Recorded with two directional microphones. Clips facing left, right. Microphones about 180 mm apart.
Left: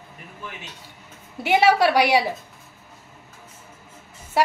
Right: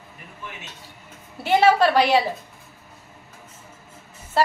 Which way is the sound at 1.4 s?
15° left (ahead or behind).